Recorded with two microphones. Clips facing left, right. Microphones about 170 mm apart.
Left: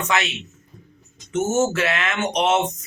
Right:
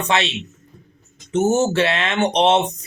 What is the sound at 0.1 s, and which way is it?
Speech, 30° right (ahead or behind).